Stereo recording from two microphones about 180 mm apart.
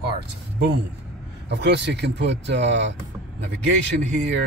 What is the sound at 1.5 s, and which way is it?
Speech, 70° right (ahead or behind).